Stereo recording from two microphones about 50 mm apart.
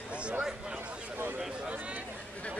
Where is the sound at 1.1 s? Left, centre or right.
Right.